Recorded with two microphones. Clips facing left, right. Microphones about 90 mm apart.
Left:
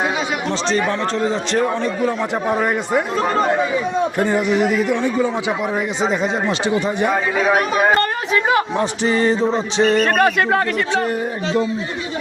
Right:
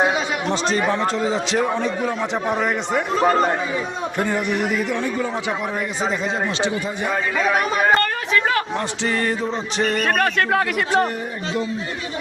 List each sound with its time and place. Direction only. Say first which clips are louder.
0.7 s a man's voice: left 2 dB; 5° right (ahead or behind)
2.5 s a man's voice: left 4 dB; 10° left (ahead or behind)
7.9 s speech: left 2 dB; 15° left (ahead or behind)
9.4 s music: left 6 dB; 30° left (ahead or behind)
10.2 s speech: left 4 dB; 10° left (ahead or behind)